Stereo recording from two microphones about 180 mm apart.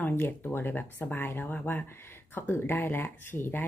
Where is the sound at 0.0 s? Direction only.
10° left (ahead or behind).